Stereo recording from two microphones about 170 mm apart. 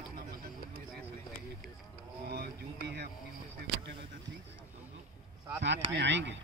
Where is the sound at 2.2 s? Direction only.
70° right (ahead or behind).